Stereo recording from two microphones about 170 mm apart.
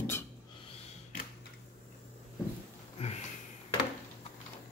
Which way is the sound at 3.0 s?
40° left (ahead or behind).